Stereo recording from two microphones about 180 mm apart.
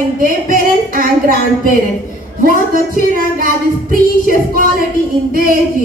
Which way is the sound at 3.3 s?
50° right (ahead or behind).